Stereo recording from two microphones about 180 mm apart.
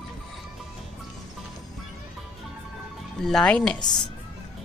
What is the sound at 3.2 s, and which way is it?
Speech, 5° left (ahead or behind).